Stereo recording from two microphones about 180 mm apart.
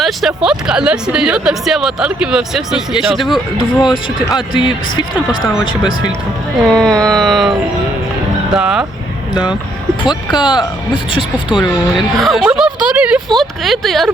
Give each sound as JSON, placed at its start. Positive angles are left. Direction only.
{"t": 0.0, "sound": "a woman's voice", "side_deg": 0}
{"t": 4.5, "sound": "speech", "side_deg": 25}
{"t": 6.7, "sound": "a woman's voice", "side_deg": 5}
{"t": 8.5, "sound": "a woman's voice", "side_deg": -5}
{"t": 10.0, "sound": "speech", "side_deg": 25}
{"t": 11.5, "sound": "a woman's voice", "side_deg": 0}